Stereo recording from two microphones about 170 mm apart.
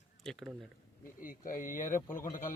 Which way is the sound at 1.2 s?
55° left (ahead or behind).